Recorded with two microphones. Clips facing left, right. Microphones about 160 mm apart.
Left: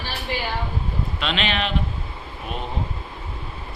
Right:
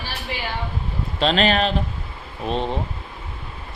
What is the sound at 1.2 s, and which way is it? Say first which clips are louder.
Speech: right 7 dB; 40° right (ahead or behind).